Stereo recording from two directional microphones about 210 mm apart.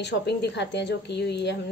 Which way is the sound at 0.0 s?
55° left (ahead or behind).